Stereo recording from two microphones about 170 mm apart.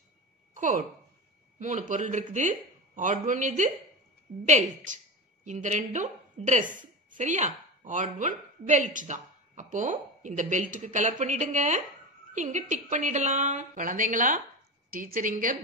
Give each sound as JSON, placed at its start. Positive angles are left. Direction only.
{"t": 0.6, "sound": "a woman's voice", "side_deg": -50}